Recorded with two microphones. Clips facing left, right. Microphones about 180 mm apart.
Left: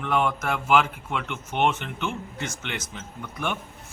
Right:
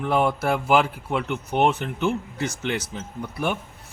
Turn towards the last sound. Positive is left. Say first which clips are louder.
# right 4 dB
turn(degrees=-35)  # may be behind; listen again after turning